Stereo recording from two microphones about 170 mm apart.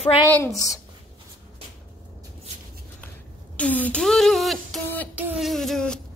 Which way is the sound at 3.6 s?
10° left (ahead or behind).